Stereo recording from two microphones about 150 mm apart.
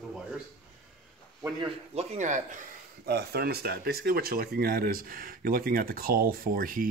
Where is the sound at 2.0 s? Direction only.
55° right (ahead or behind).